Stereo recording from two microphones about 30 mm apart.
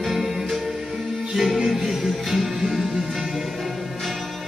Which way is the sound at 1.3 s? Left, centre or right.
Centre.